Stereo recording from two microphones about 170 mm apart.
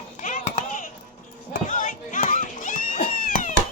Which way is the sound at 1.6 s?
50° left (ahead or behind).